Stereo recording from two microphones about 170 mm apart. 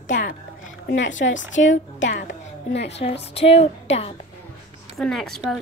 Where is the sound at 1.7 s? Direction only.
90° left.